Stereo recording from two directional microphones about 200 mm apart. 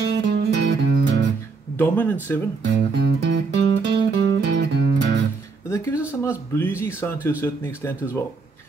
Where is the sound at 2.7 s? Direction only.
55° right (ahead or behind).